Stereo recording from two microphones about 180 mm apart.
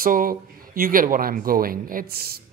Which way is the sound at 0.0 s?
50° right (ahead or behind).